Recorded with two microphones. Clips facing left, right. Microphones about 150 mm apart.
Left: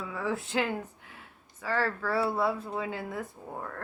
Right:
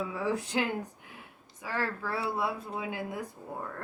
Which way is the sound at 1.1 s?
15° right (ahead or behind).